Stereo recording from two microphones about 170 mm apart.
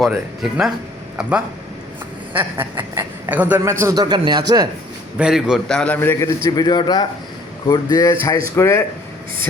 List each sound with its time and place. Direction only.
0.0 s a man's voice: 5° right (ahead or behind); by 4.7 s 25° right (ahead or behind)
5.1 s a man's voice: 5° right (ahead or behind); by 8.8 s 15° left (ahead or behind)